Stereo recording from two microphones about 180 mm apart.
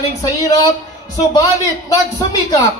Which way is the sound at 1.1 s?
20° left (ahead or behind).